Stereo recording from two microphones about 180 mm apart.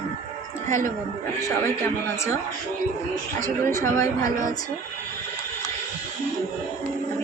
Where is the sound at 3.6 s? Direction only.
15° left (ahead or behind).